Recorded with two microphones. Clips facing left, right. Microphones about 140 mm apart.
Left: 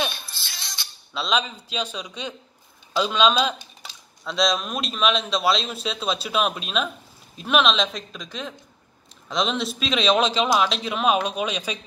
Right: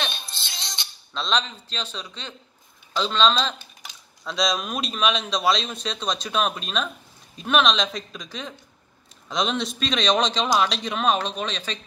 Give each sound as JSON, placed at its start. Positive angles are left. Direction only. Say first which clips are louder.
{"t": 0.1, "sound": "music", "louder": "right 2 dB", "side_deg": -20}
{"t": 1.1, "sound": "a man's voice", "louder": "left 1 dB", "side_deg": 5}
{"t": 4.2, "sound": "a man's voice", "louder": "left 2 dB", "side_deg": 0}